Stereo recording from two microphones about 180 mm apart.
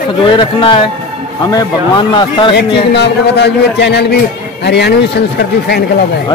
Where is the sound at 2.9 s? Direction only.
70° left (ahead or behind).